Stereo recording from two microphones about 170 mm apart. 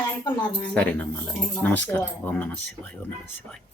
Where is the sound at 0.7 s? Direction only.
10° left (ahead or behind).